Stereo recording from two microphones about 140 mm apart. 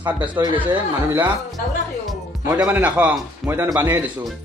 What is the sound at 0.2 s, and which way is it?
Speech, 35° right (ahead or behind).